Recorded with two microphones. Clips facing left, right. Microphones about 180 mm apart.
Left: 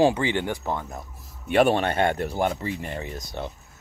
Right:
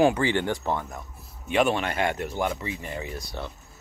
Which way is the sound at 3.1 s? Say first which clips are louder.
Left 2 dB; 20° left (ahead or behind).